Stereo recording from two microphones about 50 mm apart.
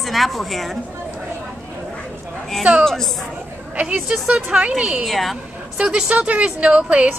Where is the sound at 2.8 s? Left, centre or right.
Centre.